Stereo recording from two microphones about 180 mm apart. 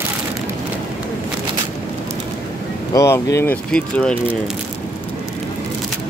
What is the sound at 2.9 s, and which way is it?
Speech, 15° left (ahead or behind).